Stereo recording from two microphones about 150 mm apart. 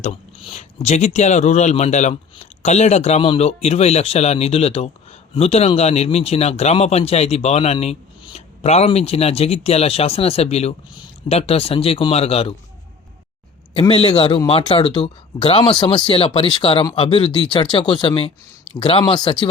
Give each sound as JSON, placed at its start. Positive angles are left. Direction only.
{"t": 0.0, "sound": "speech", "side_deg": 45}
{"t": 13.7, "sound": "speech", "side_deg": 35}